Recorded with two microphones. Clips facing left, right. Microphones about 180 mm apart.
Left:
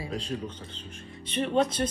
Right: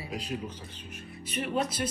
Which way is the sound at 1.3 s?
30° left (ahead or behind).